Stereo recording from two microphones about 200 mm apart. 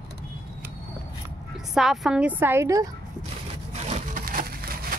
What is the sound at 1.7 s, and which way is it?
Speech, centre (ahead or behind).